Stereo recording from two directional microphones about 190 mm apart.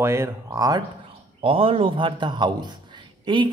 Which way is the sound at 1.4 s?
30° right (ahead or behind).